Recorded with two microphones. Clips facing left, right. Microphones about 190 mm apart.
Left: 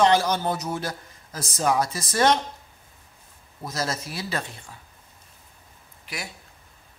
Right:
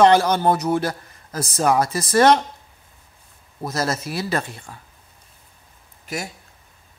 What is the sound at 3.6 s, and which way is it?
A man's voice, 60° right (ahead or behind).